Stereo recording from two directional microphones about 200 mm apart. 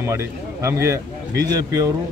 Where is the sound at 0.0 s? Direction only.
15° right (ahead or behind).